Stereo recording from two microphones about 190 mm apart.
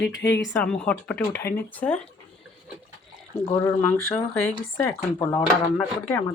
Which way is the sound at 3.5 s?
5° left (ahead or behind).